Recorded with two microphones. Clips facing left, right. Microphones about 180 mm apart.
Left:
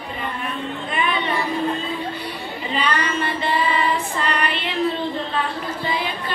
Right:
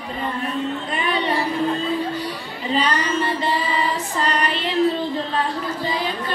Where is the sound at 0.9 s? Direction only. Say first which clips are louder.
Even; 40° right (ahead or behind).